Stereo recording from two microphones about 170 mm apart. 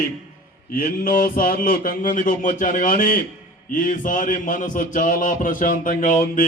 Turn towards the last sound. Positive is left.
turn(degrees=50)  # may be behind; listen again after turning